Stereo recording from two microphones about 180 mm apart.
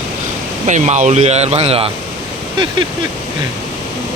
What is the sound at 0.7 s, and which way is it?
Speech, 40° right (ahead or behind).